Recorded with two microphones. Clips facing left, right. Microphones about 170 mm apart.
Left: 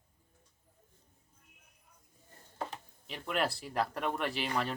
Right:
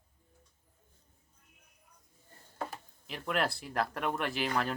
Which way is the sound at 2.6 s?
Centre (ahead or behind).